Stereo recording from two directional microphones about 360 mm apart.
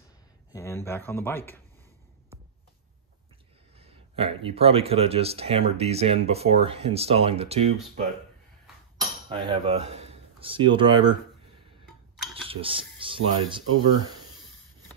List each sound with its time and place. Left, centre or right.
0.5 s speech: centre
3.8 s speech: centre
9.4 s speech: centre
12.4 s speech: centre